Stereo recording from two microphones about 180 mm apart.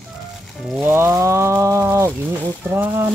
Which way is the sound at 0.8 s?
15° right (ahead or behind).